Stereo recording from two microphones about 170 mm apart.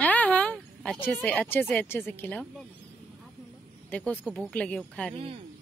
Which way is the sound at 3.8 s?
10° left (ahead or behind).